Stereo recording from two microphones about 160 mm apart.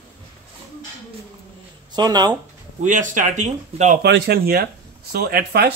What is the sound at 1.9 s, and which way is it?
Speech, 25° right (ahead or behind).